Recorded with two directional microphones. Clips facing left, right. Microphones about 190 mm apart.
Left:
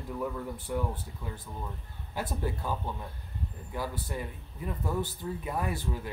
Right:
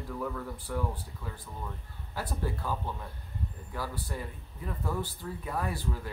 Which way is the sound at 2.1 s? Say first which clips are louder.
Left 1 dB; 20° left (ahead or behind).